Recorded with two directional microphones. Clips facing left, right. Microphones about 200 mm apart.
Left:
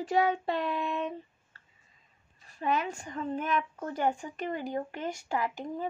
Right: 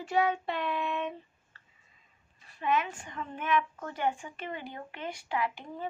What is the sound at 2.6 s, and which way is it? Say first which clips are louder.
A woman's voice: even; 40° left (ahead or behind).